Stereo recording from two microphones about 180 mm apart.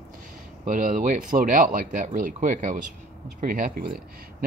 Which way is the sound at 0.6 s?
50° right (ahead or behind).